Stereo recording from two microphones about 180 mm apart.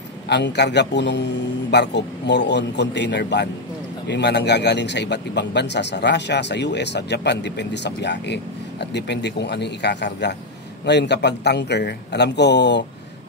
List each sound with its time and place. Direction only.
0.3 s a man's voice: 70° left (ahead or behind)